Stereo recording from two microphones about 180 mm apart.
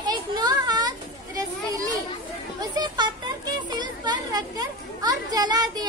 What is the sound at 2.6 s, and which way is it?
A woman's voice, 25° right (ahead or behind).